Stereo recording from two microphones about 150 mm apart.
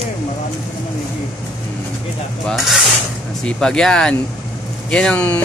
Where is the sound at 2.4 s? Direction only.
Centre (ahead or behind).